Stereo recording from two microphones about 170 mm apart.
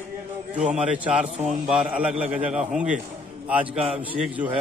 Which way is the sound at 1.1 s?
5° right (ahead or behind).